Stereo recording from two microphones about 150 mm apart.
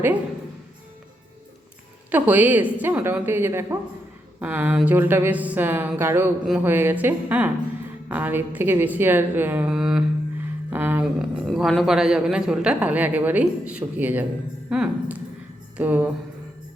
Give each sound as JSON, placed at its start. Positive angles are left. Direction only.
{"t": 2.0, "sound": "a woman's voice", "side_deg": -10}
{"t": 10.7, "sound": "a sound", "side_deg": -15}
{"t": 11.0, "sound": "a man's voice", "side_deg": 0}